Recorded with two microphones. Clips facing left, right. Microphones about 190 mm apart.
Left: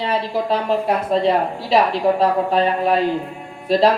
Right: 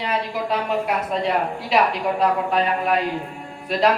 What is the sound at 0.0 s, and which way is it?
Speech, 30° left (ahead or behind).